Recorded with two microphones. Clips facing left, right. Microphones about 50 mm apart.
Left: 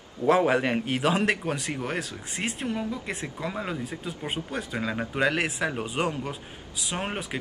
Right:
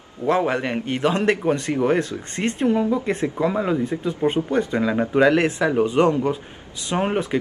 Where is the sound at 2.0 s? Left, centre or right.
Centre.